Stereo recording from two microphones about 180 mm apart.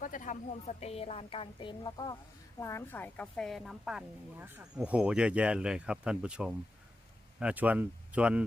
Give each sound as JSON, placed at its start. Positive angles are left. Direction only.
{"t": 0.0, "sound": "a woman's voice", "side_deg": 45}
{"t": 2.6, "sound": "a woman's voice", "side_deg": 15}